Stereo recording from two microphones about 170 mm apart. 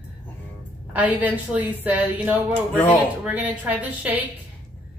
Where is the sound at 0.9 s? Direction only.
10° right (ahead or behind).